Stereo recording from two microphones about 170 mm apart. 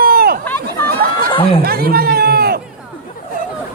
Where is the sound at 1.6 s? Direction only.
65° right (ahead or behind).